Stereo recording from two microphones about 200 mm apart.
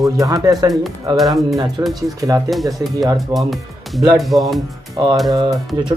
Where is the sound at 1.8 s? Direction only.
15° right (ahead or behind).